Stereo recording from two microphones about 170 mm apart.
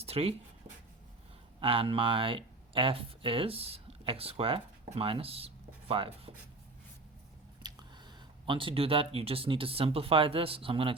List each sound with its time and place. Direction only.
0.0 s speech: 35° right (ahead or behind)
1.5 s speech: 30° right (ahead or behind)
7.6 s a sound: 25° right (ahead or behind)
8.4 s speech: 30° right (ahead or behind)